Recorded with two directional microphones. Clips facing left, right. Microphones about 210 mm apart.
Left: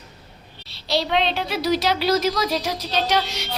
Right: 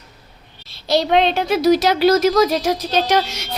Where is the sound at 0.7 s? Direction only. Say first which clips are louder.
Right 6 dB; 50° right (ahead or behind).